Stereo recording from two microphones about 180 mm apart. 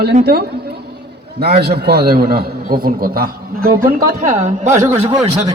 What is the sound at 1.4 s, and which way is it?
A man's voice, 60° right (ahead or behind).